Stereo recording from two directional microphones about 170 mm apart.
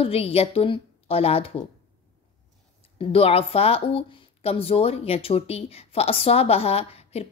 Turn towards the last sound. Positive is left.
turn(degrees=35)  # may be behind; listen again after turning